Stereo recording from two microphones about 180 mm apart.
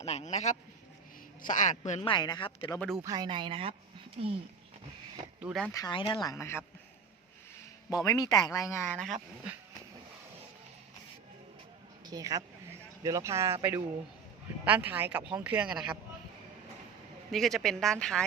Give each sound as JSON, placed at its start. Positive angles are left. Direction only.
{"t": 0.0, "sound": "a man's voice", "side_deg": 40}
{"t": 2.0, "sound": "speech", "side_deg": 25}
{"t": 2.7, "sound": "a woman's voice", "side_deg": 5}
{"t": 3.0, "sound": "speech", "side_deg": -20}
{"t": 5.4, "sound": "speech", "side_deg": -5}
{"t": 5.7, "sound": "speech", "side_deg": 25}
{"t": 6.2, "sound": "speech", "side_deg": 15}
{"t": 7.9, "sound": "speech", "side_deg": 20}
{"t": 12.0, "sound": "speech", "side_deg": -20}
{"t": 17.3, "sound": "a woman's voice", "side_deg": 0}